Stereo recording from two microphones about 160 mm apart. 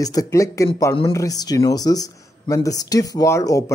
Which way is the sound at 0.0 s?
20° left (ahead or behind).